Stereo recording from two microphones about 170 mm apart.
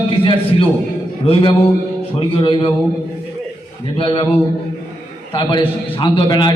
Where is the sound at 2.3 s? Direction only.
30° left (ahead or behind).